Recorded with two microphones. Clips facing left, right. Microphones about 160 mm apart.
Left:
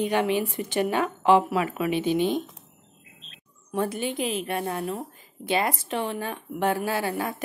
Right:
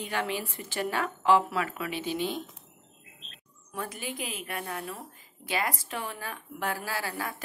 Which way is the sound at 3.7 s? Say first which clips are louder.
Left 9 dB; 30° left (ahead or behind).